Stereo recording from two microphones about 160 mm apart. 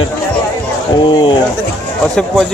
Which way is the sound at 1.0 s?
30° left (ahead or behind).